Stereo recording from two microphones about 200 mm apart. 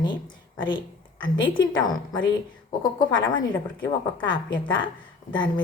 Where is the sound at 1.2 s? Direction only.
25° left (ahead or behind).